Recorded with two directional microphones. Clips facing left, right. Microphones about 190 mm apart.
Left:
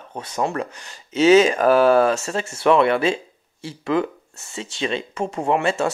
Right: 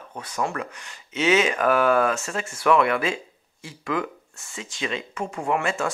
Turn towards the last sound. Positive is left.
turn(degrees=25)  # may be behind; listen again after turning